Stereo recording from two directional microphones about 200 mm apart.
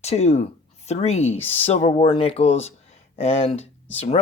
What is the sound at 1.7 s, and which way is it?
Speech, 35° left (ahead or behind).